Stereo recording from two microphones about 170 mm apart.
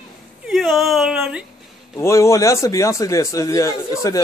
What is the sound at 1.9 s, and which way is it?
A man's voice, 15° left (ahead or behind).